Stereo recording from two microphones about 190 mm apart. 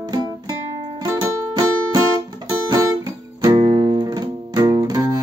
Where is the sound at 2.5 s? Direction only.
20° right (ahead or behind).